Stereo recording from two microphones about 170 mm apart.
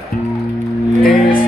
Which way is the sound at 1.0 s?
60° left (ahead or behind).